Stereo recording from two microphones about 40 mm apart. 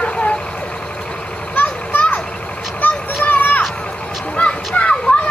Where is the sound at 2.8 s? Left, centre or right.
Left.